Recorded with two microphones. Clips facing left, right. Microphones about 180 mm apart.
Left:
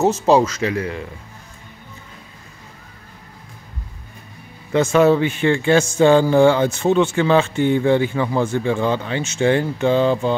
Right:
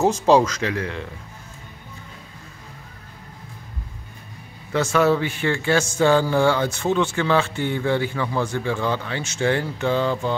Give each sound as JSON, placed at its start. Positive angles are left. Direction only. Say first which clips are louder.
{"t": 0.0, "sound": "speech", "louder": "left 2 dB", "side_deg": 5}
{"t": 4.7, "sound": "a man's voice", "louder": "left 5 dB", "side_deg": 20}